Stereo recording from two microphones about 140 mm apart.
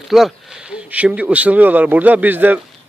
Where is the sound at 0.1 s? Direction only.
Centre (ahead or behind).